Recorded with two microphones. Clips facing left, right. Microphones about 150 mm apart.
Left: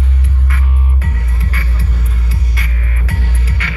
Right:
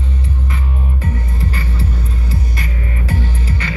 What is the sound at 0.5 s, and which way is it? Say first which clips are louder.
Music: even; 25° right (ahead or behind).